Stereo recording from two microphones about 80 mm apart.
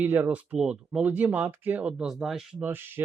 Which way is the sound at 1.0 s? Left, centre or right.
Centre.